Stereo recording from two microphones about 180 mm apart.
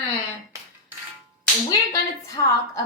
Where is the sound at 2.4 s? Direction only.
20° left (ahead or behind).